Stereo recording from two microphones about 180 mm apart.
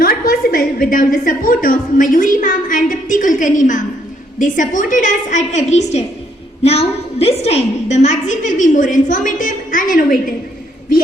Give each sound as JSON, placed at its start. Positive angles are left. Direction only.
{"t": 0.0, "sound": "a woman's voice", "side_deg": 55}